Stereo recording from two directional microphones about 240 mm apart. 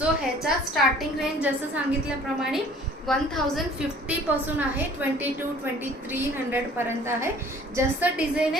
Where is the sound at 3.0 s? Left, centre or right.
Centre.